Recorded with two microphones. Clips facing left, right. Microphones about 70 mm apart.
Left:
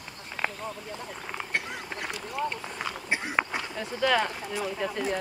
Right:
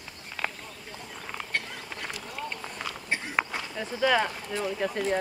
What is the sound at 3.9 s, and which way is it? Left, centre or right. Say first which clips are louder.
Speech: right 1 dB; centre.